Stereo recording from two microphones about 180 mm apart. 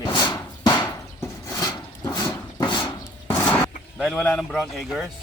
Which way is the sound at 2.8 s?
10° left (ahead or behind).